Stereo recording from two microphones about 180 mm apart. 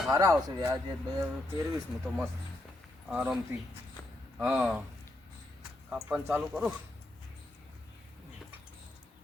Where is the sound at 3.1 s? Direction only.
5° right (ahead or behind).